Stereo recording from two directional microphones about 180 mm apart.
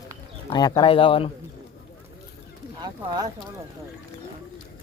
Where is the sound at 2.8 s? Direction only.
20° right (ahead or behind).